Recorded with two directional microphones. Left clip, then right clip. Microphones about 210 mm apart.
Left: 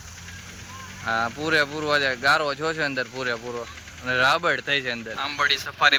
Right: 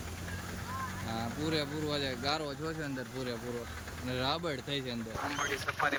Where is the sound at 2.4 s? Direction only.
30° left (ahead or behind).